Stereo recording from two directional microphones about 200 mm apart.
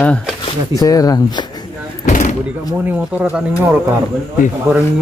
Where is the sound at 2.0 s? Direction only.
35° left (ahead or behind).